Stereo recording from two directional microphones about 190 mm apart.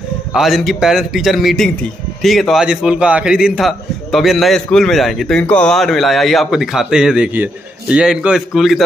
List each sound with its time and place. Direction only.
0.3 s a man's voice: centre (ahead or behind)